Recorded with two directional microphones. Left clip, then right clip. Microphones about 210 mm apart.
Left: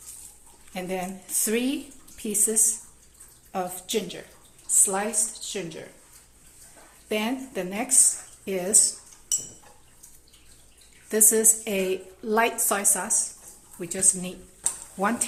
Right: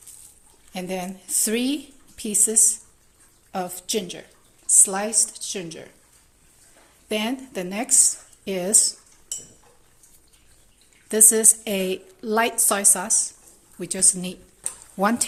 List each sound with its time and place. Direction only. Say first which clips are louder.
0.7 s a woman's voice: right 1 dB; 40° right (ahead or behind)
7.1 s speech: right 2 dB; 40° right (ahead or behind)
11.1 s a woman's voice: right 3 dB; 35° right (ahead or behind)